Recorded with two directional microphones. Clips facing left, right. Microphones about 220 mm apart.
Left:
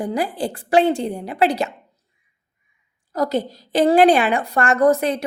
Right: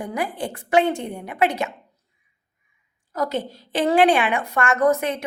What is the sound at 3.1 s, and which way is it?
A woman's voice, 35° left (ahead or behind).